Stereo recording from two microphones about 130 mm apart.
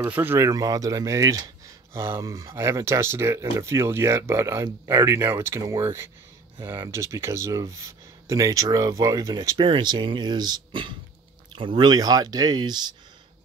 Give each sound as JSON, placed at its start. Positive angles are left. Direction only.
{"t": 0.0, "sound": "speech", "side_deg": -15}
{"t": 0.5, "sound": "speech", "side_deg": -30}